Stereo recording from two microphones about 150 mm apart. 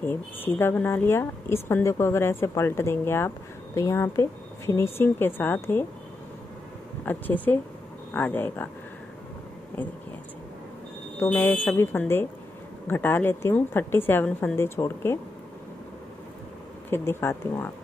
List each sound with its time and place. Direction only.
0.0 s speech: 15° left (ahead or behind)
7.1 s speech: 10° left (ahead or behind)
11.1 s speech: 15° left (ahead or behind)
16.9 s speech: 15° left (ahead or behind)